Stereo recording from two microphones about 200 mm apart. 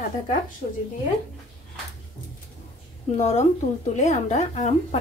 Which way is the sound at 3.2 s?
35° left (ahead or behind).